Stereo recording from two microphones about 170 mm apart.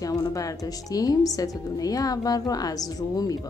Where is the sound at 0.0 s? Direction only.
20° left (ahead or behind).